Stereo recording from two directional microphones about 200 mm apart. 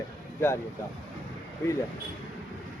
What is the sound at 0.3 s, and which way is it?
Speech, 10° left (ahead or behind).